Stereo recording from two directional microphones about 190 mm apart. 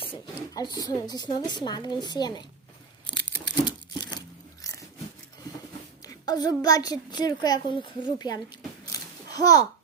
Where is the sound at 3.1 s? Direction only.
25° left (ahead or behind).